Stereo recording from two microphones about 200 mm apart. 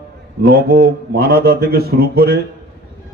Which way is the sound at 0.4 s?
50° right (ahead or behind).